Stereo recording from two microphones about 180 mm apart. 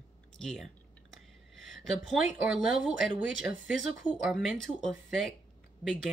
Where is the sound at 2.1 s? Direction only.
Centre (ahead or behind).